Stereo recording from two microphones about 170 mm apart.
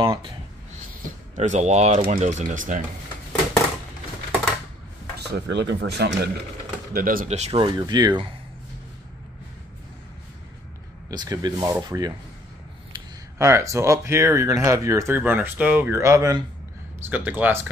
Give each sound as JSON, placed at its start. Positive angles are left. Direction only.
{"t": 0.0, "sound": "speech", "side_deg": -30}
{"t": 1.3, "sound": "speech", "side_deg": -45}
{"t": 5.2, "sound": "speech", "side_deg": -85}
{"t": 6.9, "sound": "speech", "side_deg": -55}
{"t": 7.2, "sound": "speech", "side_deg": -40}
{"t": 11.1, "sound": "speech", "side_deg": -25}
{"t": 13.4, "sound": "speech", "side_deg": -15}